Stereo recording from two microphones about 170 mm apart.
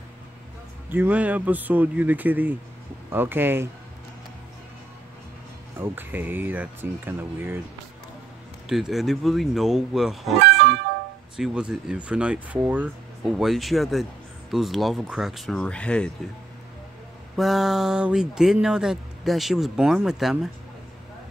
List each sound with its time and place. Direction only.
0.8 s speech: 10° right (ahead or behind)
5.8 s speech: 10° right (ahead or behind)
8.6 s speech: centre (ahead or behind)
10.4 s music: 90° right
11.3 s speech: 5° right (ahead or behind)
17.4 s speech: centre (ahead or behind)